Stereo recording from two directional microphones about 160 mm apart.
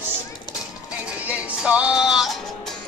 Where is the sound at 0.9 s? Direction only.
10° right (ahead or behind).